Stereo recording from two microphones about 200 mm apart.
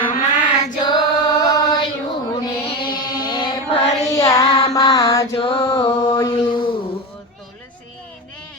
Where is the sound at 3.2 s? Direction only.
25° left (ahead or behind).